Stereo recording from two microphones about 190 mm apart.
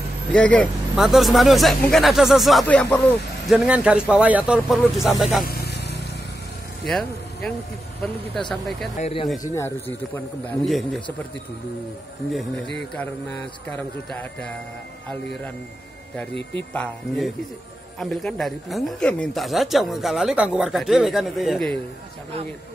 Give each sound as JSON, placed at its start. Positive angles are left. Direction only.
{"t": 0.3, "sound": "speech", "side_deg": 5}
{"t": 3.4, "sound": "speech", "side_deg": -5}
{"t": 5.4, "sound": "vehicle", "side_deg": 55}
{"t": 6.9, "sound": "speech", "side_deg": 5}
{"t": 8.9, "sound": "speech", "side_deg": 30}
{"t": 9.4, "sound": "speech", "side_deg": 15}
{"t": 10.6, "sound": "speech", "side_deg": 0}
{"t": 12.9, "sound": "speech", "side_deg": 10}
{"t": 16.7, "sound": "speech", "side_deg": 5}